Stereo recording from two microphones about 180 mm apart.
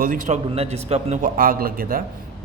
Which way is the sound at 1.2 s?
55° right (ahead or behind).